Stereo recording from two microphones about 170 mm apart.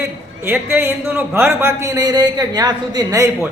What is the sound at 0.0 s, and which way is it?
A man's voice, 15° right (ahead or behind).